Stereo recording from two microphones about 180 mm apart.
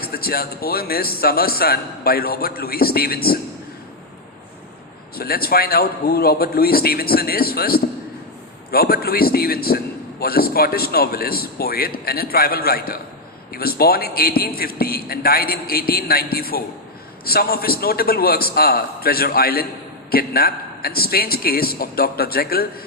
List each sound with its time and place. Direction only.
0.0 s a man's voice: 55° left (ahead or behind)
5.1 s a man's voice: 55° left (ahead or behind)